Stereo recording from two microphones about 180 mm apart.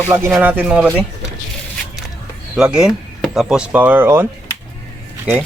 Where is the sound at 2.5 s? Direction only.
5° right (ahead or behind).